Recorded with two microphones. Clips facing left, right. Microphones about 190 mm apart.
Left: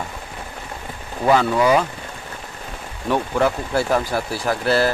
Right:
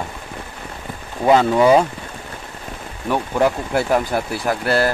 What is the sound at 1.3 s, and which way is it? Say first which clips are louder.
Speech: right 3 dB; 25° right (ahead or behind).